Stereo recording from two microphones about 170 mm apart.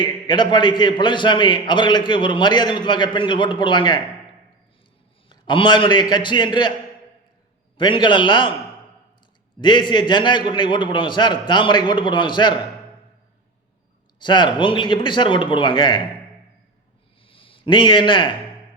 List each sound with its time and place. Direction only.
0.0 s a man's voice: 25° left (ahead or behind)
5.3 s a man's voice: 30° left (ahead or behind)
7.8 s a man's voice: 30° left (ahead or behind)
9.6 s a man's voice: 25° left (ahead or behind)
14.2 s a man's voice: 25° left (ahead or behind)
17.2 s a sound: 30° left (ahead or behind)